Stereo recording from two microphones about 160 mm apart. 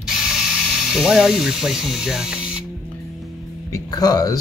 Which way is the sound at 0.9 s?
Centre (ahead or behind).